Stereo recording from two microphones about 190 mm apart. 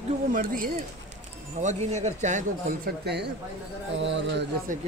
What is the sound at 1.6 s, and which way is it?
Speech, 35° right (ahead or behind).